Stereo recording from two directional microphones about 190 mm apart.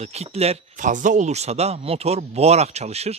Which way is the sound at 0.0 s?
35° right (ahead or behind).